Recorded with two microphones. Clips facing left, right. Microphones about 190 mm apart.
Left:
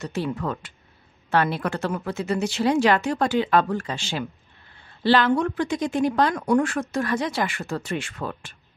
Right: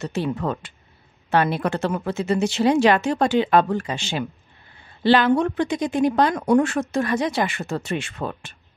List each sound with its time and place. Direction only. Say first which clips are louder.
0.0 s speech: right 3 dB; 25° right (ahead or behind)